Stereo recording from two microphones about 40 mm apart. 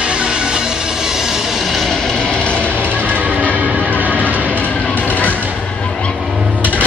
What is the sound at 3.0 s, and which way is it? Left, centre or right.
Music, right.